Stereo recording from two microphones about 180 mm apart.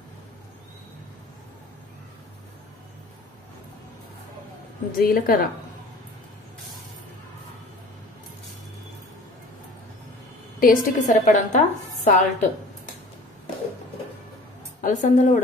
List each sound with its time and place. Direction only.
4.9 s a woman's voice: 55° left (ahead or behind)
10.6 s a woman's voice: 50° left (ahead or behind)
14.8 s a woman's voice: 45° left (ahead or behind)